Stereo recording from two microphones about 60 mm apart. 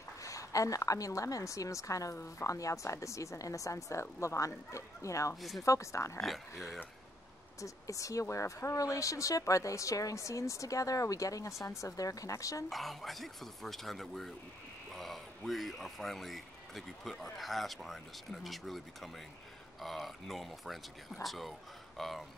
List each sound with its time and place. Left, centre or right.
0.2 s a woman's voice: left
5.3 s speech: centre
5.7 s a woman's voice: left
7.6 s a woman's voice: left
12.6 s speech: centre